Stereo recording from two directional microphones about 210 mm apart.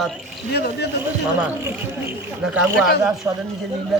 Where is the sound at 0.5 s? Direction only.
50° left (ahead or behind).